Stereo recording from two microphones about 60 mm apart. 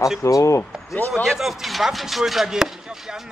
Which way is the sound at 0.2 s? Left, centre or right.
Left.